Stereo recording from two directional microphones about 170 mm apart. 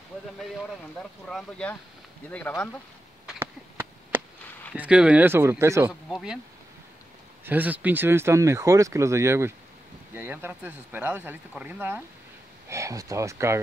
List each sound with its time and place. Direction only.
1.2 s speech: 5° left (ahead or behind)
3.3 s a sound: 15° right (ahead or behind)
4.7 s speech: 5° right (ahead or behind)
6.0 s speech: centre (ahead or behind)
7.4 s speech: 10° right (ahead or behind)